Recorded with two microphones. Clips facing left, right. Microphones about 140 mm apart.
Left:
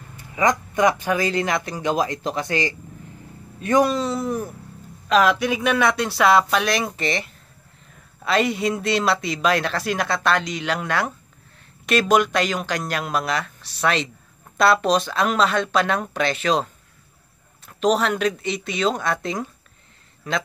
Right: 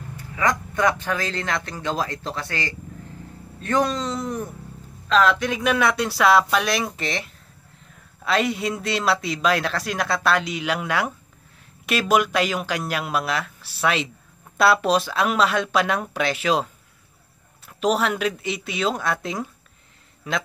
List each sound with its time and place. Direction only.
0.2 s a man's voice: 20° left (ahead or behind)
5.6 s a man's voice: centre (ahead or behind)
17.6 s a man's voice: 5° right (ahead or behind)